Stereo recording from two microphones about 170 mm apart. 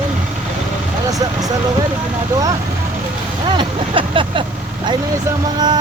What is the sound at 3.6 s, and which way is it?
Vehicle, 30° right (ahead or behind).